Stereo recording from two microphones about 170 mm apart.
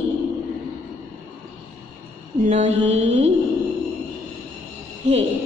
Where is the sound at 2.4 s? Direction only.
40° right (ahead or behind).